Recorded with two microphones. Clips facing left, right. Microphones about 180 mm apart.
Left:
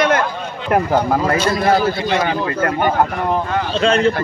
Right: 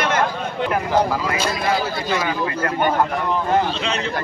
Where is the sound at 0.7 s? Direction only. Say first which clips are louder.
Left 5 dB; 50° left (ahead or behind).